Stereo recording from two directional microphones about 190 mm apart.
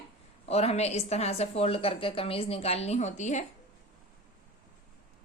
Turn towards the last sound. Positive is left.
turn(degrees=40)  # may be behind; listen again after turning